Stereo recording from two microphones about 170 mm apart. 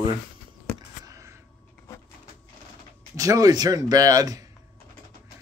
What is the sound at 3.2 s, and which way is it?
Speech, 20° right (ahead or behind).